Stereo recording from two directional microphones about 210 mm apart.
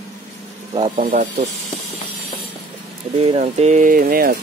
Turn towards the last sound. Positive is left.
turn(degrees=-45)  # may be behind; listen again after turning